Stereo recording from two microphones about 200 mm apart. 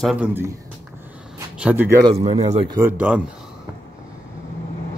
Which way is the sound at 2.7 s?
10° right (ahead or behind).